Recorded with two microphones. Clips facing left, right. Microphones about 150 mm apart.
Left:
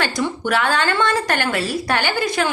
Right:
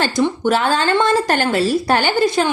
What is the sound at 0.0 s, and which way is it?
A woman's voice, 30° right (ahead or behind).